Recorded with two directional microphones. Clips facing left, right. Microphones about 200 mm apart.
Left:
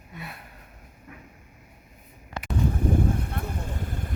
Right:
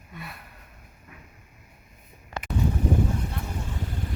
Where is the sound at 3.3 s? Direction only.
55° left (ahead or behind).